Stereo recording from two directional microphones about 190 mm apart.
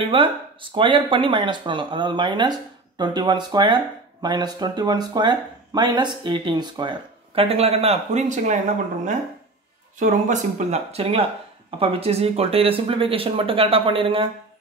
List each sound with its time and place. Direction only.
0.0 s speech: 25° right (ahead or behind)